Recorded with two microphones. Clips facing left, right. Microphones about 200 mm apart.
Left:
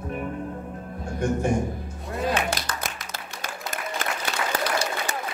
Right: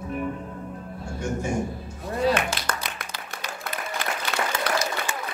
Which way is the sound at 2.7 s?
55° right (ahead or behind).